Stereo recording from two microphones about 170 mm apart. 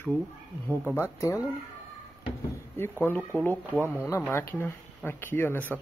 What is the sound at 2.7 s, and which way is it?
A man's voice, 10° left (ahead or behind).